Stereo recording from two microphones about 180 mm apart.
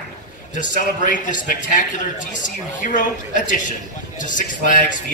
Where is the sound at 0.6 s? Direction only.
45° left (ahead or behind).